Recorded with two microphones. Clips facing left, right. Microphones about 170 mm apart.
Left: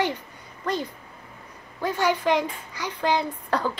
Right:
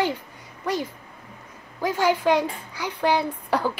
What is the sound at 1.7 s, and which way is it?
Speech, 10° right (ahead or behind).